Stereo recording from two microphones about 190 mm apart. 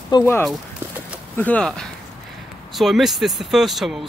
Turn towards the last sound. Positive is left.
turn(degrees=0)  # may be behind; listen again after turning